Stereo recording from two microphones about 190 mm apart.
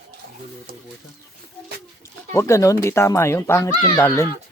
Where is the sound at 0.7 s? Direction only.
50° right (ahead or behind).